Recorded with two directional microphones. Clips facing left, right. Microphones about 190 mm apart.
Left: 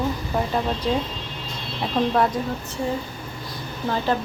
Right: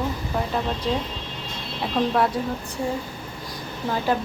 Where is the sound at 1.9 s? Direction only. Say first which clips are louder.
Left 1 dB; centre (ahead or behind).